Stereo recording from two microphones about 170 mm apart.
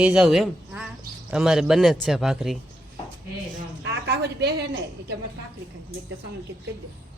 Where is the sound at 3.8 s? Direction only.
70° right (ahead or behind).